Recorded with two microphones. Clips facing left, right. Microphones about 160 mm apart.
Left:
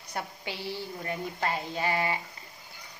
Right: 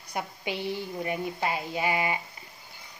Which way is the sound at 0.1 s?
20° right (ahead or behind).